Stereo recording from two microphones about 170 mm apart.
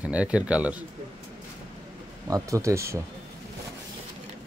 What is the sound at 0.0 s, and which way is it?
Speech, 5° right (ahead or behind).